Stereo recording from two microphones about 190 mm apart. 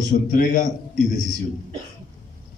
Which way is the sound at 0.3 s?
45° left (ahead or behind).